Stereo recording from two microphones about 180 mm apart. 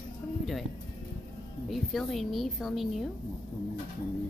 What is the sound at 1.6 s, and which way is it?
A woman's voice, centre (ahead or behind).